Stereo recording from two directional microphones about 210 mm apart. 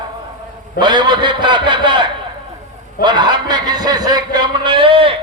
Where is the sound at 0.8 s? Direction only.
20° right (ahead or behind).